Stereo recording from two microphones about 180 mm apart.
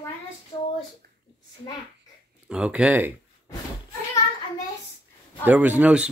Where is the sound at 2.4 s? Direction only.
5° right (ahead or behind).